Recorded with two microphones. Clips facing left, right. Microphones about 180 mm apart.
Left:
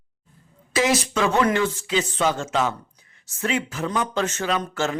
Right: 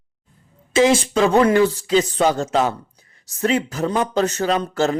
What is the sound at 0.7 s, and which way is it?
A man's voice, 30° right (ahead or behind).